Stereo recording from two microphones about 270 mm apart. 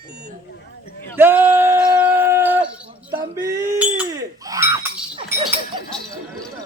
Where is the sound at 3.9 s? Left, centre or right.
Centre.